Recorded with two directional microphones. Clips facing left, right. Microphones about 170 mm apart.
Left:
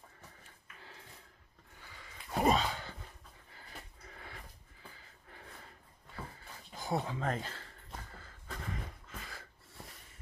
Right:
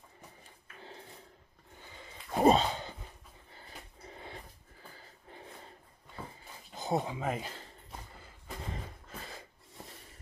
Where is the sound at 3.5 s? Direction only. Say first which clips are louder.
Right 1 dB; 25° right (ahead or behind).